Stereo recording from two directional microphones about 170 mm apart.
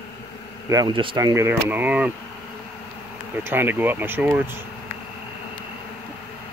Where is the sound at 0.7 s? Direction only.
25° right (ahead or behind); by 2.1 s 10° right (ahead or behind).